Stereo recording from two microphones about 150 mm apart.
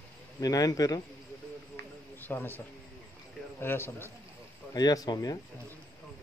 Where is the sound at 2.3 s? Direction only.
15° left (ahead or behind).